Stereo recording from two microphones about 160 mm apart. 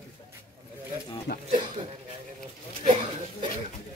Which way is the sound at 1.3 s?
65° left (ahead or behind).